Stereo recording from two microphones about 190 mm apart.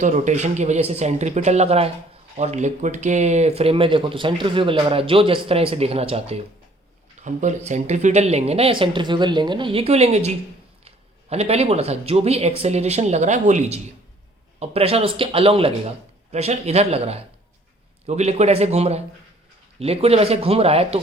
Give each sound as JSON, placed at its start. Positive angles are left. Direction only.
{"t": 0.0, "sound": "speech", "side_deg": -40}